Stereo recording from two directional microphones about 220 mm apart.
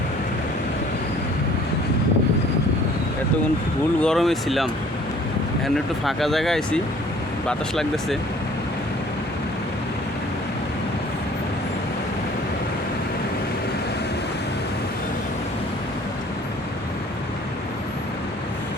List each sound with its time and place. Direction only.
4.0 s speech: centre (ahead or behind)